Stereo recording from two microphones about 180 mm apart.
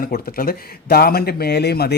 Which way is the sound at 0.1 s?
55° left (ahead or behind).